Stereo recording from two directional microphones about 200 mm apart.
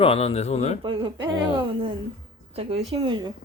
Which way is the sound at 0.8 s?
25° right (ahead or behind).